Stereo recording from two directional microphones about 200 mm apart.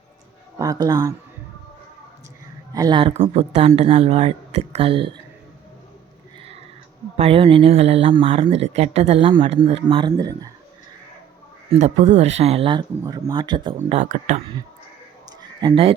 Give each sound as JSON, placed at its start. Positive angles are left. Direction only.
{"t": 0.6, "sound": "speech", "side_deg": -20}
{"t": 2.7, "sound": "speech", "side_deg": -20}
{"t": 7.2, "sound": "speech", "side_deg": -30}
{"t": 11.7, "sound": "speech", "side_deg": -35}
{"t": 13.7, "sound": "speech", "side_deg": -40}
{"t": 15.3, "sound": "a sound", "side_deg": -20}